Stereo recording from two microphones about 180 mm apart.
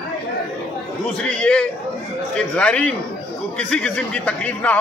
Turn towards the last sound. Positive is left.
turn(degrees=5)  # may be behind; listen again after turning